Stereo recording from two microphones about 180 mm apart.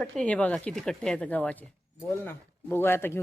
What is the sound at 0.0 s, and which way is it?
Speech, 5° left (ahead or behind).